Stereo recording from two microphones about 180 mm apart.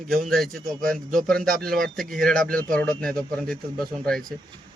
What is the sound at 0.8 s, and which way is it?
Speech, 50° right (ahead or behind).